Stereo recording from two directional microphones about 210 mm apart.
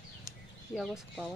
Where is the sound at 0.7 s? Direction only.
Centre (ahead or behind).